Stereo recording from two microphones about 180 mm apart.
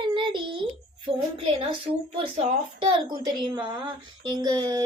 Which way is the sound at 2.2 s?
35° right (ahead or behind).